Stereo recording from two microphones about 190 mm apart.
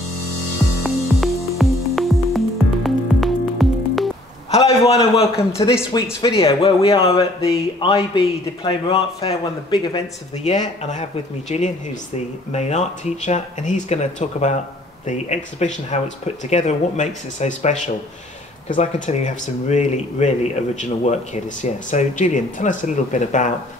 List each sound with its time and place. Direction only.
0.8 s music: centre (ahead or behind)
4.5 s a man's voice: 35° left (ahead or behind)